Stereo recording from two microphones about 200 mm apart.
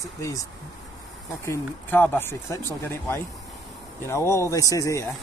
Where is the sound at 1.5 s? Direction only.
10° left (ahead or behind).